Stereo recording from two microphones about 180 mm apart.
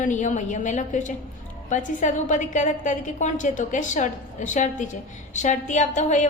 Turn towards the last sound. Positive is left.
turn(degrees=40)  # may be behind; listen again after turning